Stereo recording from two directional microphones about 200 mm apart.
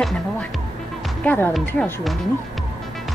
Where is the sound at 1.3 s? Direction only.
10° left (ahead or behind).